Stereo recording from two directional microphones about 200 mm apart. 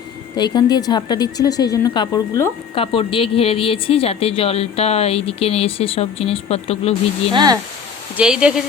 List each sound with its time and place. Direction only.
0.3 s speech: 20° left (ahead or behind)
7.3 s speech: 20° right (ahead or behind)
8.1 s speech: 5° right (ahead or behind)